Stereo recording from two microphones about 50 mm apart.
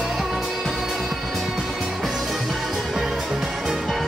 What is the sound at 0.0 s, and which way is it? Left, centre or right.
Music, centre.